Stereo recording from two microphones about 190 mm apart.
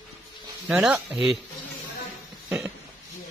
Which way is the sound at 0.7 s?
Centre (ahead or behind).